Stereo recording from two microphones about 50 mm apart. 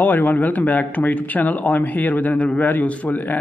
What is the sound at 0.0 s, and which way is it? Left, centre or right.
A man's voice, left.